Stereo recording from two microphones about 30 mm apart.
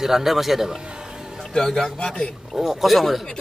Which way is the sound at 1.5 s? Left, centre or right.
Centre.